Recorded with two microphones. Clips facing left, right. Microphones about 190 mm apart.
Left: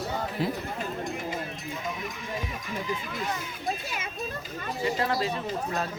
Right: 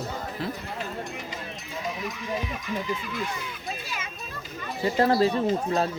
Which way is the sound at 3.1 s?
45° left (ahead or behind).